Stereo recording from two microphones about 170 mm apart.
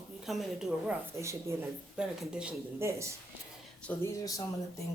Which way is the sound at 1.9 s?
5° right (ahead or behind).